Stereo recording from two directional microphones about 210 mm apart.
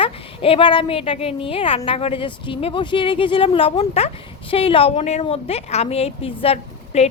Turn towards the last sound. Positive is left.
turn(degrees=30)  # may be behind; listen again after turning